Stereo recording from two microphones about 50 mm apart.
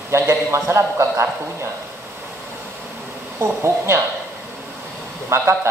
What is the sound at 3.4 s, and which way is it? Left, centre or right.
Speech, right.